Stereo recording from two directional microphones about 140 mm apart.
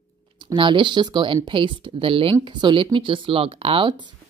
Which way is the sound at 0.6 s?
35° right (ahead or behind).